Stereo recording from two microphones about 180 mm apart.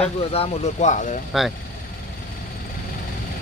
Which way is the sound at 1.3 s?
Centre (ahead or behind).